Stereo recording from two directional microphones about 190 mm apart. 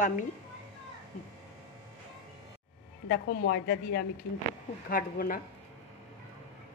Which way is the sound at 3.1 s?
65° left (ahead or behind).